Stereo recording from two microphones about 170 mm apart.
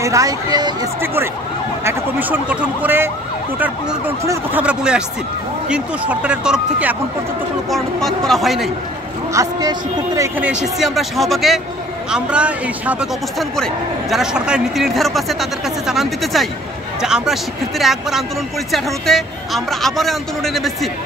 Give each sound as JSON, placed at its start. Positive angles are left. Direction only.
{"t": 0.0, "sound": "speech", "side_deg": -20}
{"t": 1.9, "sound": "speech", "side_deg": -10}
{"t": 9.3, "sound": "speech", "side_deg": -20}
{"t": 10.4, "sound": "speech", "side_deg": -5}